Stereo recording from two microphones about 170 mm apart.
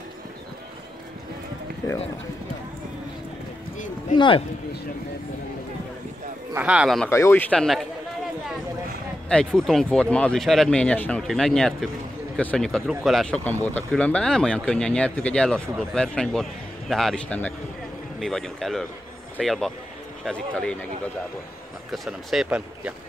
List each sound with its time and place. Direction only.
4.1 s speech: 30° left (ahead or behind)
6.5 s speech: 5° right (ahead or behind)
7.1 s speech: 15° left (ahead or behind)
9.3 s speech: 5° left (ahead or behind)
21.9 s speech: centre (ahead or behind)